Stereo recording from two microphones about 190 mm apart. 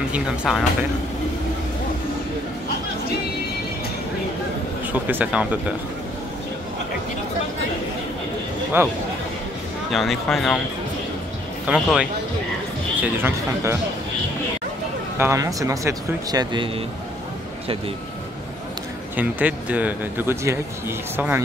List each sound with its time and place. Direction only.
0.1 s speech: centre (ahead or behind)
5.0 s speech: 10° right (ahead or behind)
8.8 s speech: 10° right (ahead or behind)
9.8 s speech: centre (ahead or behind)
11.6 s speech: 5° right (ahead or behind)
15.1 s speech: 15° right (ahead or behind)
19.1 s speech: 10° right (ahead or behind)